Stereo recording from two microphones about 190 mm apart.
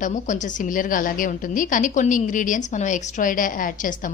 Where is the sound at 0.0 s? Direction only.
40° left (ahead or behind).